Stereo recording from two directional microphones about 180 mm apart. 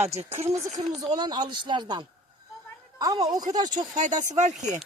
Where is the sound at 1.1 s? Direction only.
25° right (ahead or behind).